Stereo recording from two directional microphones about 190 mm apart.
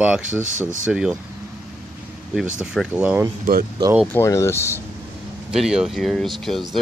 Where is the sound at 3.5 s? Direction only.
50° right (ahead or behind).